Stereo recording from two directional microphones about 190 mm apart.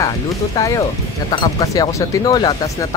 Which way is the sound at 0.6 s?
20° left (ahead or behind).